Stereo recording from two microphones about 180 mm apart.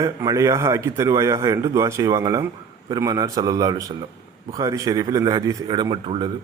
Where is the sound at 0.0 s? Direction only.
20° right (ahead or behind).